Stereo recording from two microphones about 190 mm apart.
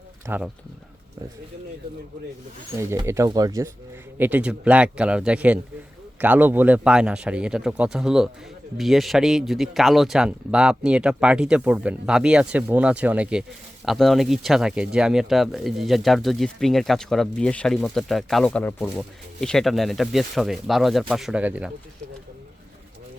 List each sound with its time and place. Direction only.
0.3 s speech: 5° right (ahead or behind)
2.7 s speech: 15° right (ahead or behind)
4.2 s speech: 5° right (ahead or behind)